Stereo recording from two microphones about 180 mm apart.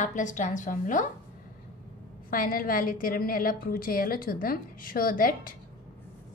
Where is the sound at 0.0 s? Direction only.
45° left (ahead or behind).